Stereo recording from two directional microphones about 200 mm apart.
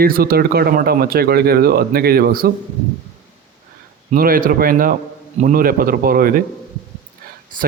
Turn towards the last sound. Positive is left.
turn(degrees=-40)  # may be behind; listen again after turning